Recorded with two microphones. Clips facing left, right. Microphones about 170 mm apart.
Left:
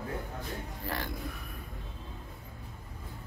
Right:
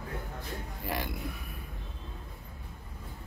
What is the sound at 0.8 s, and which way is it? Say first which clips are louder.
Music: right 2 dB; 15° right (ahead or behind).